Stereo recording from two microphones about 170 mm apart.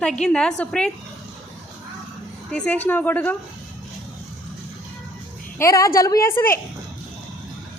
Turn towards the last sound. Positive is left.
turn(degrees=15)  # may be behind; listen again after turning